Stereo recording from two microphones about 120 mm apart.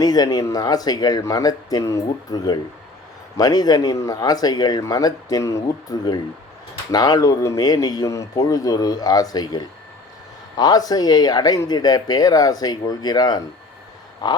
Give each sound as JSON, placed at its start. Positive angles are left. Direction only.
{"t": 0.0, "sound": "speech", "side_deg": 35}